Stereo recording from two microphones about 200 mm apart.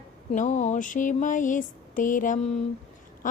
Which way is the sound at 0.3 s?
35° left (ahead or behind).